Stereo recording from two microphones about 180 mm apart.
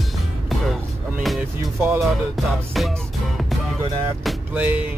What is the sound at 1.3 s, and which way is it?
Speech, centre (ahead or behind).